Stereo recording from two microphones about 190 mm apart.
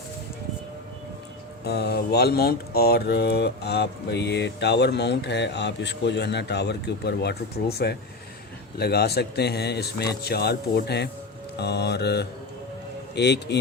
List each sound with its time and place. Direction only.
1.6 s speech: 60° left (ahead or behind)